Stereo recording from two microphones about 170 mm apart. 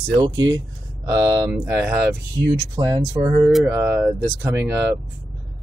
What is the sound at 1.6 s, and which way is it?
Speech, 10° right (ahead or behind).